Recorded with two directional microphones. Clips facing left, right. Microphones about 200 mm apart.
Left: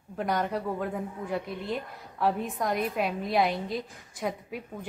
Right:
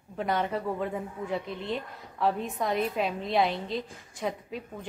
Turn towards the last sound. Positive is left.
turn(degrees=5)  # may be behind; listen again after turning